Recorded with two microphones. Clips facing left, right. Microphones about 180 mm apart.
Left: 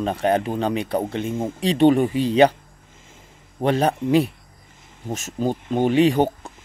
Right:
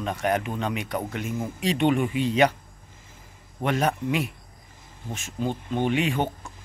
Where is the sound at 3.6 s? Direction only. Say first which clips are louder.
Left 5 dB; 30° left (ahead or behind).